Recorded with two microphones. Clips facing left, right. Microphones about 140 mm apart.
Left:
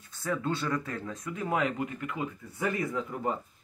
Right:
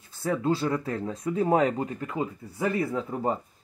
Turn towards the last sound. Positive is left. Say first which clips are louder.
# right 4 dB
turn(degrees=-30)  # may be behind; listen again after turning